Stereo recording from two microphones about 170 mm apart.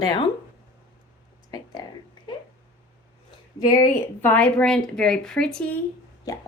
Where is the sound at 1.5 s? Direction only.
25° left (ahead or behind).